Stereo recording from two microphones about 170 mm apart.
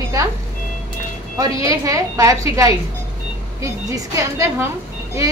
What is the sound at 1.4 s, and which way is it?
A woman's voice, 20° right (ahead or behind).